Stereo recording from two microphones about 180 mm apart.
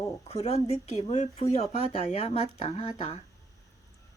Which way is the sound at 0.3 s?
35° left (ahead or behind).